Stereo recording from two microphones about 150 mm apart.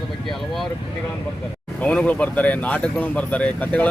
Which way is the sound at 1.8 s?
10° left (ahead or behind).